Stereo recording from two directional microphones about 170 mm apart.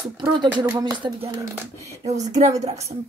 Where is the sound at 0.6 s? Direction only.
15° right (ahead or behind).